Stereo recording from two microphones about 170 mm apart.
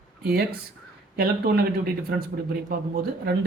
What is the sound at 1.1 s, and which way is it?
Speech, 65° right (ahead or behind).